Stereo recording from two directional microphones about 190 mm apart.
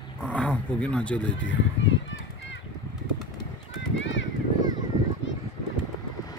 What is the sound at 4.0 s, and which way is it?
Run, 75° left (ahead or behind).